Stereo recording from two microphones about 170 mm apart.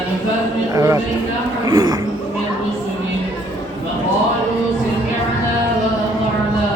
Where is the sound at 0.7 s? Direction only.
20° right (ahead or behind).